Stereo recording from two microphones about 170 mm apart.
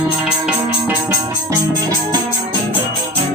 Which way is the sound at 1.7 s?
25° right (ahead or behind).